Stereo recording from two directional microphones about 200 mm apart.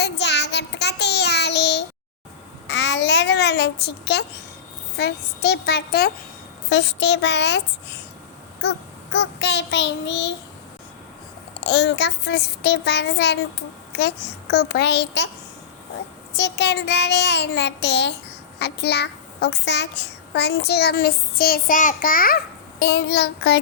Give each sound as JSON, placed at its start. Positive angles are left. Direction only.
{"t": 0.0, "sound": "child singing", "side_deg": 60}
{"t": 2.6, "sound": "babbling", "side_deg": 60}
{"t": 4.9, "sound": "a child's voice", "side_deg": 55}
{"t": 9.1, "sound": "a child's voice", "side_deg": 60}
{"t": 11.6, "sound": "a child's voice", "side_deg": 55}
{"t": 16.4, "sound": "a child's voice", "side_deg": 60}
{"t": 22.8, "sound": "a child's voice", "side_deg": 55}